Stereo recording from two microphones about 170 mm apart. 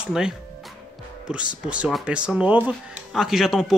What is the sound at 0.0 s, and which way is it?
Speech, 5° right (ahead or behind).